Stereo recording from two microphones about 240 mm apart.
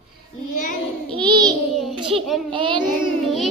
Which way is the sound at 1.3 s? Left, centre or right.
Centre.